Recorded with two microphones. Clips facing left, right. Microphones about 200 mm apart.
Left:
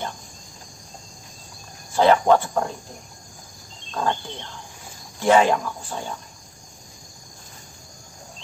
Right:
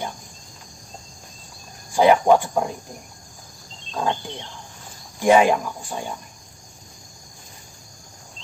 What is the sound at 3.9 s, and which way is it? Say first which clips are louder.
Speech: even; 15° right (ahead or behind).